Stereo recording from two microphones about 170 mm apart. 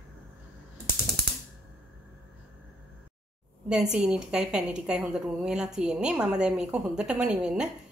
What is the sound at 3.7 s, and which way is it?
A woman's voice, 5° right (ahead or behind).